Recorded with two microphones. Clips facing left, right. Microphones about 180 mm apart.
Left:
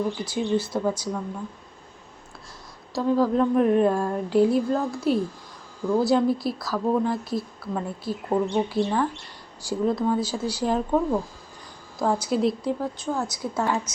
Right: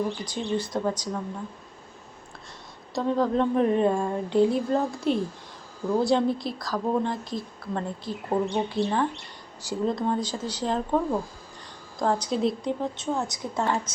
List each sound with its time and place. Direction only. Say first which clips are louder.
0.3 s speech: left 4 dB; 5° left (ahead or behind)
2.9 s a woman's voice: left 2 dB; centre (ahead or behind)